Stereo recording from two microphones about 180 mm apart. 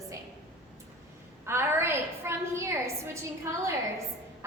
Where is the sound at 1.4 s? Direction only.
15° right (ahead or behind).